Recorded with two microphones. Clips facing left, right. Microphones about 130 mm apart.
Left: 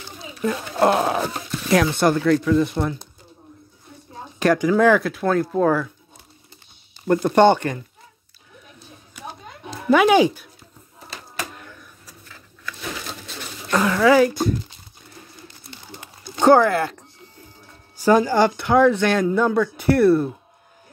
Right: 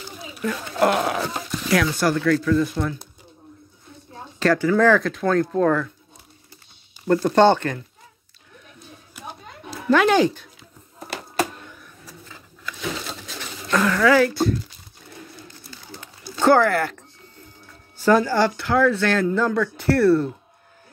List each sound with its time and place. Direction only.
0.4 s speech: 25° left (ahead or behind)
4.4 s speech: 15° left (ahead or behind)
7.1 s speech: 15° left (ahead or behind)
9.8 s speech: 10° left (ahead or behind)
13.7 s speech: 20° left (ahead or behind)
15.7 s a sound: 20° left (ahead or behind)
17.9 s speech: 15° left (ahead or behind)